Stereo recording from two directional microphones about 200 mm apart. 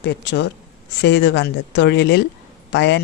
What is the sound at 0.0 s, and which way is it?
Speech, 60° left (ahead or behind).